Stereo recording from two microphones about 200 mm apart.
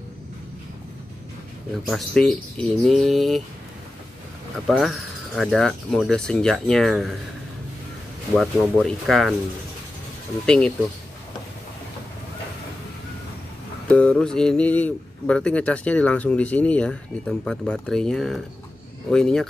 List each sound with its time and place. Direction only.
1.8 s speech: centre (ahead or behind)
4.6 s speech: centre (ahead or behind)
8.4 s speech: centre (ahead or behind)
10.4 s speech: 5° left (ahead or behind)
13.8 s speech: 5° left (ahead or behind)